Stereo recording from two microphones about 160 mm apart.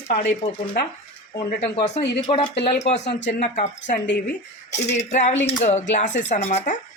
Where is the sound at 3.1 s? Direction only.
90° left.